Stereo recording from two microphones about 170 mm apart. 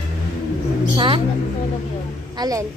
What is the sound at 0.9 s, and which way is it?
Speech, 30° right (ahead or behind).